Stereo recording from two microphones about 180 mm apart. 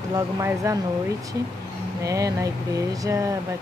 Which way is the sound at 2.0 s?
20° right (ahead or behind).